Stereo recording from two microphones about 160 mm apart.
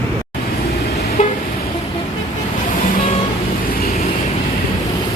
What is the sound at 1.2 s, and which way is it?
Vehicle, 45° left (ahead or behind).